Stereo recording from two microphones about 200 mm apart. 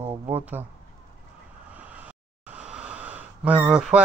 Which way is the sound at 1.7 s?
5° right (ahead or behind).